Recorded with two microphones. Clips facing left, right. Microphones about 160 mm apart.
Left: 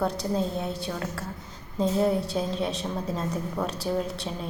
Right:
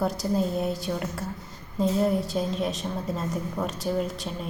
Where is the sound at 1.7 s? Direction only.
Centre (ahead or behind).